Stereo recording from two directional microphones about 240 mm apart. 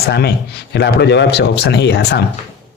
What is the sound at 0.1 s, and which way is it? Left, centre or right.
Speech, left.